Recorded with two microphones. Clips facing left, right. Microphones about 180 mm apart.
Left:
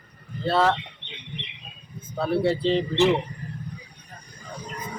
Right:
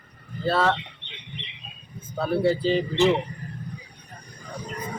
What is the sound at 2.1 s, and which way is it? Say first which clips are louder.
Speech: even; centre (ahead or behind).